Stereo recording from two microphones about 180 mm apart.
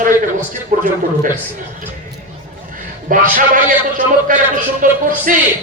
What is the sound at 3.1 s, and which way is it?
A man's voice, 50° right (ahead or behind).